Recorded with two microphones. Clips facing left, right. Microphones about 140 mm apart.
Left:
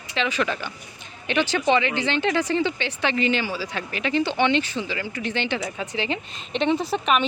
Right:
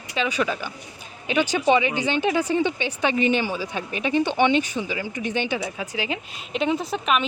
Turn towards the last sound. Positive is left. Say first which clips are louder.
# left 1 dB
turn(degrees=0)  # may be behind; listen again after turning